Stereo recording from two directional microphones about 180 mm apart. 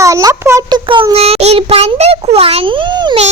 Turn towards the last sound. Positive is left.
turn(degrees=-25)  # may be behind; listen again after turning